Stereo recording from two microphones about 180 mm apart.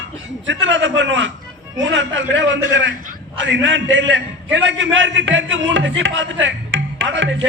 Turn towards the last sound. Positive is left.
turn(degrees=-90)